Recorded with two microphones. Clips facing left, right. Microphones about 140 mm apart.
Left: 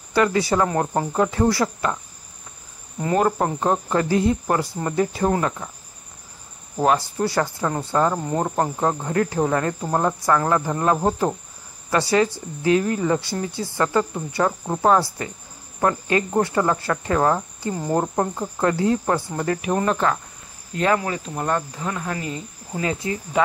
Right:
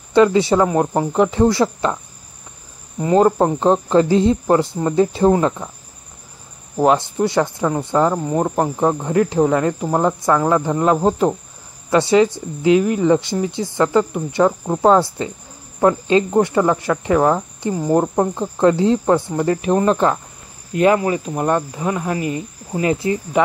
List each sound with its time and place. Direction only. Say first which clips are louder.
0.1 s speech: right 6 dB; 20° right (ahead or behind)
3.0 s speech: right 6 dB; 20° right (ahead or behind)
6.8 s speech: right 4 dB; 20° right (ahead or behind)
20.7 s speech: right 6 dB; 15° right (ahead or behind)